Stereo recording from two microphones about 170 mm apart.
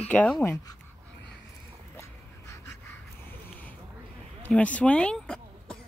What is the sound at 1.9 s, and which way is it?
Dog, 15° left (ahead or behind).